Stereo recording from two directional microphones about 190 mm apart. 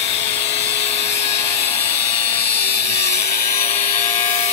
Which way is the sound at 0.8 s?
35° left (ahead or behind).